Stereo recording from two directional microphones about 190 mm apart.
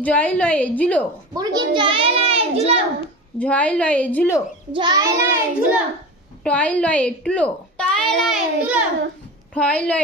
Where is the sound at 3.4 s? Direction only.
5° left (ahead or behind).